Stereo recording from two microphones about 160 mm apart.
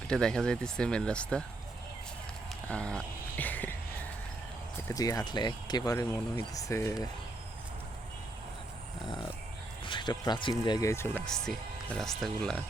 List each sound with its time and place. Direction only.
0.1 s speech: 5° left (ahead or behind)
2.6 s a sound: 5° left (ahead or behind)
4.9 s speech: 25° left (ahead or behind)
9.8 s speech: 30° left (ahead or behind)
11.4 s speech: 5° left (ahead or behind)